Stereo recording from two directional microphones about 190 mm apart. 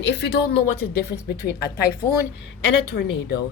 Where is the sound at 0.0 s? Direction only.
65° left (ahead or behind).